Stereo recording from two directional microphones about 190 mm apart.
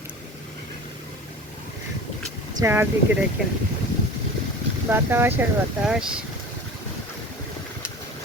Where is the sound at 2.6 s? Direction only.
15° right (ahead or behind).